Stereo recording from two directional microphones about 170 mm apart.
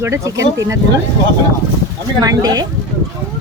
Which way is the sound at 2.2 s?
20° right (ahead or behind).